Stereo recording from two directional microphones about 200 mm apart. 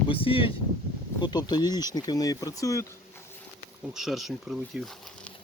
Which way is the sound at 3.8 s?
Centre (ahead or behind).